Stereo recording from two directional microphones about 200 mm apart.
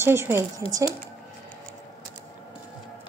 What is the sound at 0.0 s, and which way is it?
Speech, 10° right (ahead or behind).